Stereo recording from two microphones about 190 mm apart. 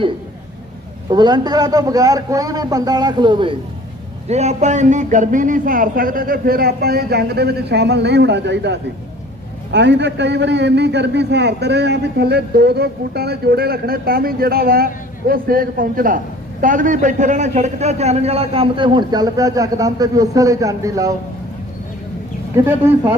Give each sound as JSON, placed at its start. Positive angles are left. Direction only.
{"t": 1.1, "sound": "a man's voice", "side_deg": -20}
{"t": 4.3, "sound": "a man's voice", "side_deg": -35}
{"t": 22.5, "sound": "speech", "side_deg": -15}